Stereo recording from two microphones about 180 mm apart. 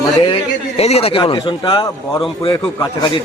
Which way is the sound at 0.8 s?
35° left (ahead or behind).